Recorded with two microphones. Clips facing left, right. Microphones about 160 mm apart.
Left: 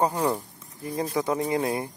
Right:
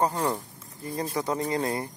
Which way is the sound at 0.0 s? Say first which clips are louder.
Left 2 dB; 15° left (ahead or behind).